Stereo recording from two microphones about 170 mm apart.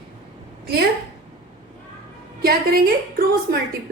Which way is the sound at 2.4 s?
60° right (ahead or behind).